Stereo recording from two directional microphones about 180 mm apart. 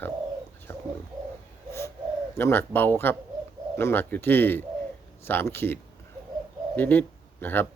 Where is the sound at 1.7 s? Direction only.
15° left (ahead or behind).